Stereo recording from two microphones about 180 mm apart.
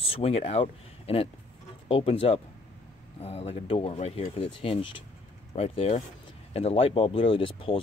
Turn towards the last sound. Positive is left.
turn(degrees=30)  # may be behind; listen again after turning